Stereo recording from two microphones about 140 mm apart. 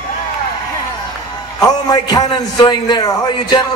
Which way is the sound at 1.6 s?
25° left (ahead or behind).